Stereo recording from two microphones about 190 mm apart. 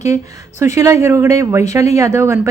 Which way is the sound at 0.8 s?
15° right (ahead or behind).